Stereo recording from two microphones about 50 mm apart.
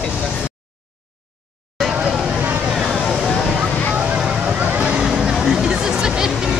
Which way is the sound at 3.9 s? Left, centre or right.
Right.